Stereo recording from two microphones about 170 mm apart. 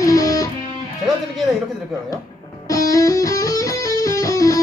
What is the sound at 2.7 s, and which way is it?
Music, 20° left (ahead or behind).